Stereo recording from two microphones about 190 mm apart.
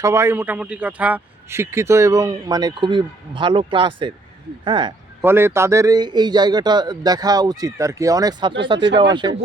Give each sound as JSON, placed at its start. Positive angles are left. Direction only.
{"t": 0.0, "sound": "a man's voice", "side_deg": -15}
{"t": 5.2, "sound": "speech", "side_deg": -10}